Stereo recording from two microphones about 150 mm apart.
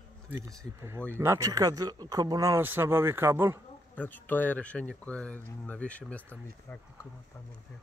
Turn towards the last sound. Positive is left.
turn(degrees=10)  # may be behind; listen again after turning